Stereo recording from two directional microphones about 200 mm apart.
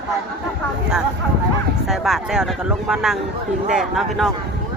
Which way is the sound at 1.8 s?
Centre (ahead or behind).